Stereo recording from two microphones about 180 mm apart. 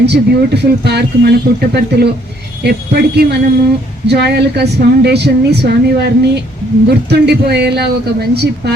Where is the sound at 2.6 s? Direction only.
65° right (ahead or behind).